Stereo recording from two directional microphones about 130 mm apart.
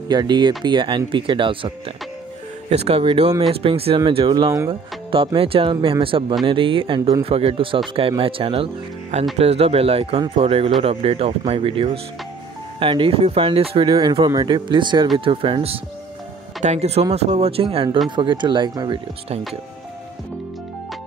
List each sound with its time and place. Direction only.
0.1 s speech: 35° right (ahead or behind)
2.7 s speech: 50° right (ahead or behind)
16.6 s speech: 55° right (ahead or behind); by 18.9 s 35° right (ahead or behind)